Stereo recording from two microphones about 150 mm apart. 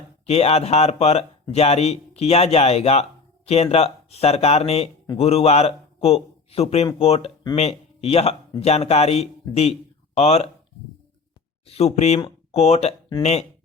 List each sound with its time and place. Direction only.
0.3 s a man's voice: 45° left (ahead or behind)
11.6 s speech: 45° left (ahead or behind)